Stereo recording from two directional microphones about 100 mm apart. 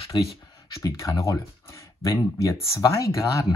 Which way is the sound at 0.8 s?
30° left (ahead or behind).